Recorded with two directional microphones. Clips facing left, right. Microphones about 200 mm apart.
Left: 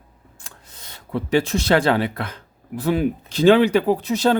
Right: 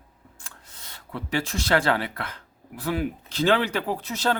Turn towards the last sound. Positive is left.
turn(degrees=15)  # may be behind; listen again after turning